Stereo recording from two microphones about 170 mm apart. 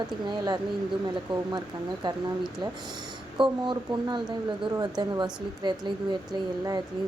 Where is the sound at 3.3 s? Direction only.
25° right (ahead or behind).